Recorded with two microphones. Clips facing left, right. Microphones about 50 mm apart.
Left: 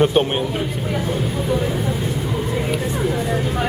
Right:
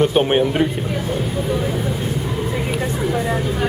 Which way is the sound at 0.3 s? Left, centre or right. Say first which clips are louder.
Right 5 dB; right.